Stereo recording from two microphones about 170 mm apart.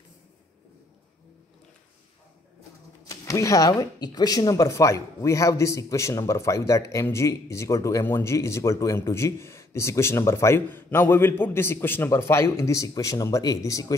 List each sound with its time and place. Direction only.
3.1 s speech: 20° left (ahead or behind)